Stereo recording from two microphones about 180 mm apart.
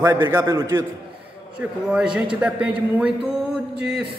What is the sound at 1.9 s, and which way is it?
A man's voice, 5° right (ahead or behind).